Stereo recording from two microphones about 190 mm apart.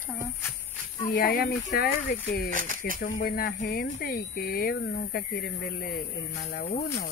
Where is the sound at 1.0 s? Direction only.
45° left (ahead or behind).